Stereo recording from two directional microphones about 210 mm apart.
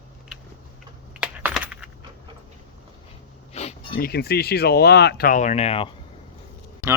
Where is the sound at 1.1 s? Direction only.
5° right (ahead or behind).